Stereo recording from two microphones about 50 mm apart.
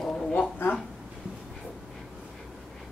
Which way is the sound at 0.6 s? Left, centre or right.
Left.